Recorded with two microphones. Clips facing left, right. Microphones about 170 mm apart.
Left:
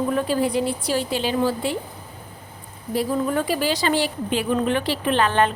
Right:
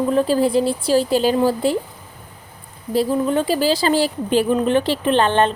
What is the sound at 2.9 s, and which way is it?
A woman's voice, 30° right (ahead or behind).